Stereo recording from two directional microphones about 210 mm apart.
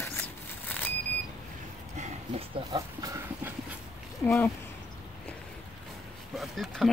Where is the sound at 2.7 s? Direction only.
15° right (ahead or behind).